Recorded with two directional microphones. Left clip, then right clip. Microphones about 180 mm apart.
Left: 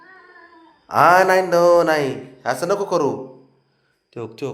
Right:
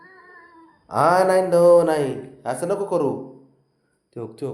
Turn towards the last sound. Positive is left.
turn(degrees=-15)  # may be behind; listen again after turning